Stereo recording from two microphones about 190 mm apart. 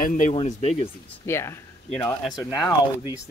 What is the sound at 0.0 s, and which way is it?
Speech, 45° left (ahead or behind).